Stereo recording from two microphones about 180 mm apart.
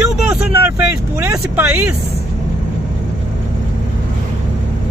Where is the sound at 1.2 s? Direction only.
10° right (ahead or behind).